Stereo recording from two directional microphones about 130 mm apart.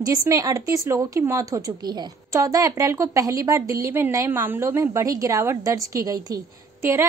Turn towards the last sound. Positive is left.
turn(degrees=-20)  # may be behind; listen again after turning